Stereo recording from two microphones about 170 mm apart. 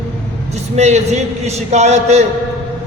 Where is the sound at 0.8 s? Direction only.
40° right (ahead or behind).